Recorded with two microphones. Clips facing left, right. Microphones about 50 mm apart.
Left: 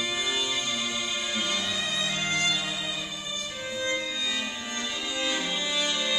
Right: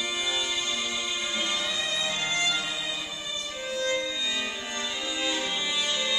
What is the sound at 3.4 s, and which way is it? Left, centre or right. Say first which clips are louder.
Violin: right 2 dB; centre.